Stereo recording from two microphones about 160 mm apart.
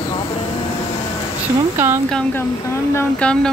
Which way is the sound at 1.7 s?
15° right (ahead or behind).